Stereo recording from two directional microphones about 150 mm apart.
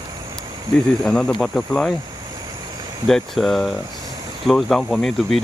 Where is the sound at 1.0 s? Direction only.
5° left (ahead or behind).